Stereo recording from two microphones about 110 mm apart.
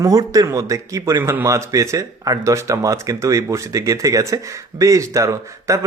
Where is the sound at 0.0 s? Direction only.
30° right (ahead or behind).